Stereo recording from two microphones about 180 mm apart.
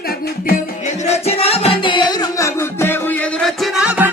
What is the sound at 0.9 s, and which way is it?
Music, 35° left (ahead or behind).